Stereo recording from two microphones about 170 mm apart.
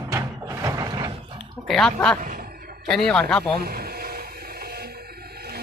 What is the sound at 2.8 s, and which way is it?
Speech, 5° left (ahead or behind).